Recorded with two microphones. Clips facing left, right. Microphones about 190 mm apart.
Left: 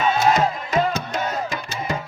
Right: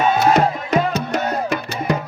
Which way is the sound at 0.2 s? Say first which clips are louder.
Right 3 dB; 65° right (ahead or behind).